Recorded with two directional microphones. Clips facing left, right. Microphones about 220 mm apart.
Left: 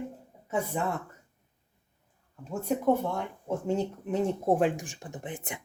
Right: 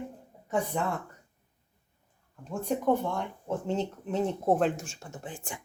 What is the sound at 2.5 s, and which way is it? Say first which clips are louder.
Speech: left 1 dB; 5° left (ahead or behind).